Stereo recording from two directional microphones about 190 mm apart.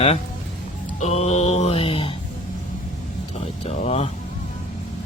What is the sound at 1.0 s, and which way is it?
Mantra, 35° left (ahead or behind).